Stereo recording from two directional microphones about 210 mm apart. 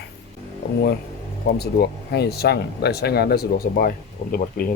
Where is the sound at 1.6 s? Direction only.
50° left (ahead or behind).